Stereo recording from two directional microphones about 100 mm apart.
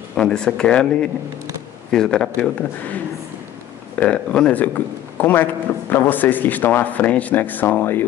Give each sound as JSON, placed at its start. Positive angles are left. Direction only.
{"t": 0.2, "sound": "speech", "side_deg": 10}
{"t": 4.0, "sound": "speech", "side_deg": 10}